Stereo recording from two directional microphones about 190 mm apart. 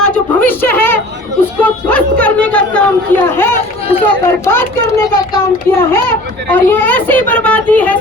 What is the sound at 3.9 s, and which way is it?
Run, 30° left (ahead or behind).